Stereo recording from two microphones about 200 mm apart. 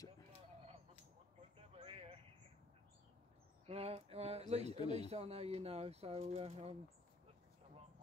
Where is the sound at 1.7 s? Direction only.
30° right (ahead or behind).